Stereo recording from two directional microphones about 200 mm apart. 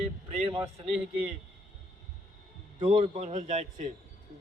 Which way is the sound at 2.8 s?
25° right (ahead or behind).